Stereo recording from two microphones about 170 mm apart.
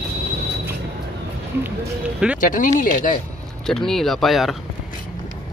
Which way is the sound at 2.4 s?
50° left (ahead or behind).